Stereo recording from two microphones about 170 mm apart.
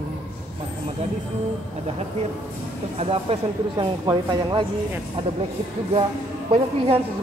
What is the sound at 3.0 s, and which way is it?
Speech, 35° right (ahead or behind).